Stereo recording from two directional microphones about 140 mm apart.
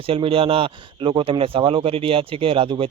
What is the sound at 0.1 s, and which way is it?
Speech, 40° right (ahead or behind).